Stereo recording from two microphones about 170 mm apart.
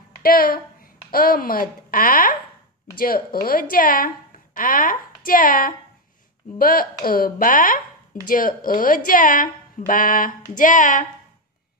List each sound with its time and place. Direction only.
0.2 s a woman's voice: 55° left (ahead or behind)